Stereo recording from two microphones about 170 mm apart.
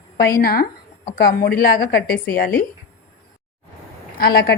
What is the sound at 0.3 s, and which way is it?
A woman's voice, 60° left (ahead or behind).